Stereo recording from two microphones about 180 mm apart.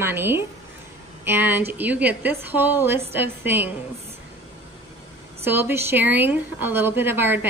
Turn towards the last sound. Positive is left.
turn(degrees=-10)  # may be behind; listen again after turning